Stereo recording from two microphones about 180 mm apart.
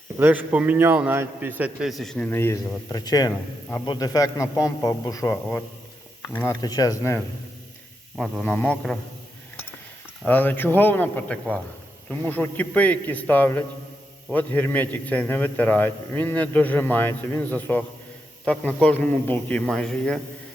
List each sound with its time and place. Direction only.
0.2 s a man's voice: 10° right (ahead or behind); by 5.6 s 10° left (ahead or behind)
6.6 s speech: 20° left (ahead or behind)
8.1 s a man's voice: 5° left (ahead or behind)
10.2 s a man's voice: 10° left (ahead or behind)